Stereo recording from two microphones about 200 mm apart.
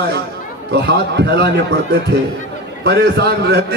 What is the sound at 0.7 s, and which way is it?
Speech, 55° right (ahead or behind).